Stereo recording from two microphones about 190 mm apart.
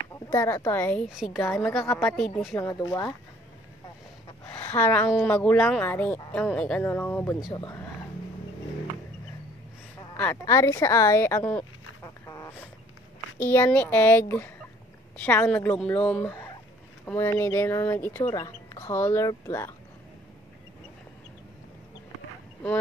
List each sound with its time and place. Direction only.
0.3 s a woman's voice: 15° left (ahead or behind)
2.5 s a woman's voice: 15° left (ahead or behind)
4.6 s a woman's voice: 10° left (ahead or behind)
10.1 s a woman's voice: 10° left (ahead or behind)
10.4 s a woman's voice: 20° left (ahead or behind)
12.0 s a sound: 20° left (ahead or behind)
13.4 s a woman's voice: 15° left (ahead or behind)